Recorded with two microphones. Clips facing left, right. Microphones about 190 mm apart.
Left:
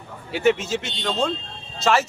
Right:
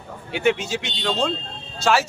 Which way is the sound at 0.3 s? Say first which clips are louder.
Left 1 dB; centre (ahead or behind).